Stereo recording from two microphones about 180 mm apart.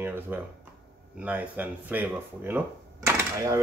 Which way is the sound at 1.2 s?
10° right (ahead or behind).